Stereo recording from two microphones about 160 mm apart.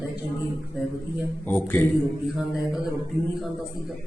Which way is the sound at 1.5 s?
10° left (ahead or behind).